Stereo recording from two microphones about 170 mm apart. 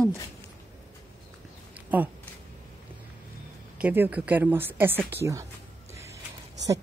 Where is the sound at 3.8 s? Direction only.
10° right (ahead or behind).